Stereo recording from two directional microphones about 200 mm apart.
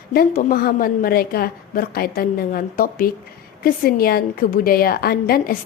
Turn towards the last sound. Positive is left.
turn(degrees=50)  # may be behind; listen again after turning